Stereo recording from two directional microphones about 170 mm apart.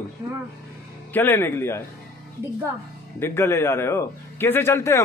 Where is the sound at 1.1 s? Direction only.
10° left (ahead or behind).